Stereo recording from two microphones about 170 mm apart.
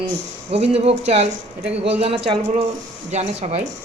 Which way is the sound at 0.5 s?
35° right (ahead or behind).